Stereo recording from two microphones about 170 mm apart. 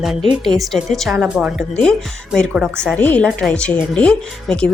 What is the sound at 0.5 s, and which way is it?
Speech, 20° right (ahead or behind).